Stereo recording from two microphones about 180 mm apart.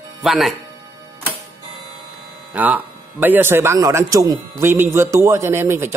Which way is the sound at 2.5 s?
10° right (ahead or behind).